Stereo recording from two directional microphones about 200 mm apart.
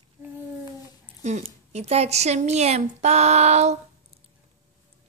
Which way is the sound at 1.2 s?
35° right (ahead or behind).